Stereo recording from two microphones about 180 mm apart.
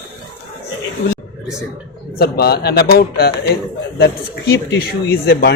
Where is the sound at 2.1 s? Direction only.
60° left (ahead or behind).